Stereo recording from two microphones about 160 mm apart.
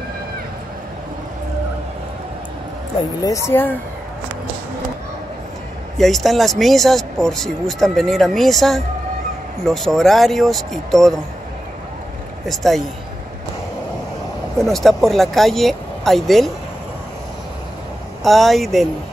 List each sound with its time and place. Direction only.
3.0 s speech: 20° left (ahead or behind)
5.9 s speech: centre (ahead or behind)
12.4 s speech: centre (ahead or behind)
14.6 s speech: centre (ahead or behind)
18.2 s speech: centre (ahead or behind)